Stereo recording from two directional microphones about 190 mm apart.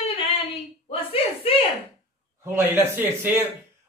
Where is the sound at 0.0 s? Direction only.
30° left (ahead or behind).